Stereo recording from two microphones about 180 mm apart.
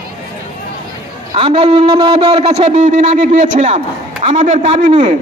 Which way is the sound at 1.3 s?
30° right (ahead or behind).